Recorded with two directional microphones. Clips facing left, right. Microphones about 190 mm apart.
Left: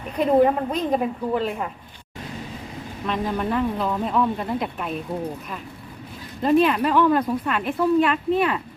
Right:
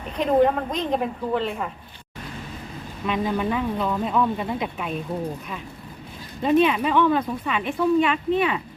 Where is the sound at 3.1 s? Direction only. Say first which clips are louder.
Right 1 dB; 5° right (ahead or behind).